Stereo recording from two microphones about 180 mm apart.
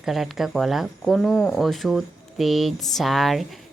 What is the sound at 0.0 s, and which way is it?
Speech, centre (ahead or behind).